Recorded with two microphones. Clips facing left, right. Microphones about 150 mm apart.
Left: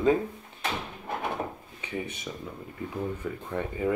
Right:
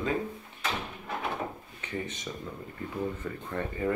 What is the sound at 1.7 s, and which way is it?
Speech, 10° left (ahead or behind).